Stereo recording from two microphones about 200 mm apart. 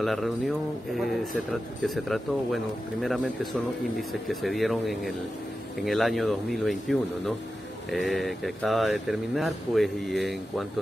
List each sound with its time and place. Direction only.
0.0 s speech: centre (ahead or behind)